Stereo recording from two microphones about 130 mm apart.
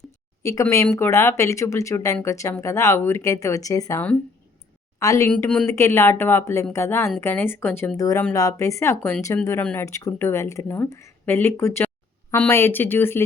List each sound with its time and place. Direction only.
0.4 s a woman's voice: 25° left (ahead or behind)